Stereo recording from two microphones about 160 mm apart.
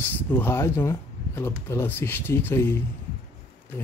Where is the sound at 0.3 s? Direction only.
15° left (ahead or behind).